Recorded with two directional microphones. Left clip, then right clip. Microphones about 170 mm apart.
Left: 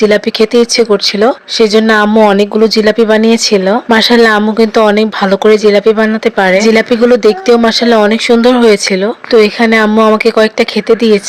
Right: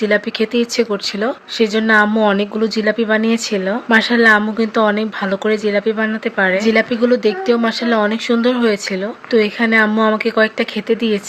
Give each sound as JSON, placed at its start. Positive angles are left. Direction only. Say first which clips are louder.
{"t": 0.0, "sound": "speech", "louder": "left 8 dB", "side_deg": 45}